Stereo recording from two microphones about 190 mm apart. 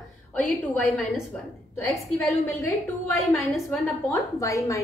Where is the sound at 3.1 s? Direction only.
Centre (ahead or behind).